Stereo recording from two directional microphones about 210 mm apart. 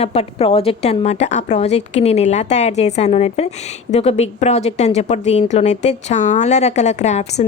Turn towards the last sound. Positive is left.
turn(degrees=30)  # may be behind; listen again after turning